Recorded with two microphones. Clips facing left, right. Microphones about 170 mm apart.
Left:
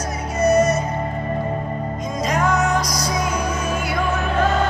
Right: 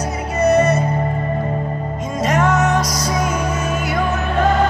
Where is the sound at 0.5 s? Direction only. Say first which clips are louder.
Right 2 dB; 60° right (ahead or behind).